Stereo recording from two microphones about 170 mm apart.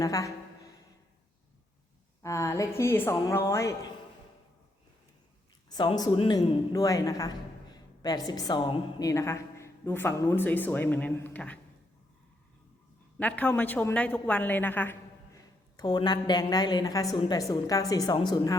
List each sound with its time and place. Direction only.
0.0 s a sound: 20° left (ahead or behind)
2.2 s speech: 15° left (ahead or behind)
5.6 s a woman's voice: 25° left (ahead or behind)
9.0 s speech: 15° left (ahead or behind)
13.1 s a woman's voice: 10° left (ahead or behind)
15.8 s a woman's voice: 25° left (ahead or behind)